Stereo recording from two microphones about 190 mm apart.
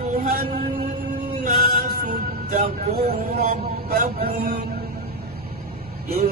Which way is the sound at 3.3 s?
50° right (ahead or behind).